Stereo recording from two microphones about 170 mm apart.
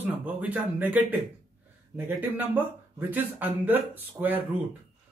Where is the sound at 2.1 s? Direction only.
10° right (ahead or behind).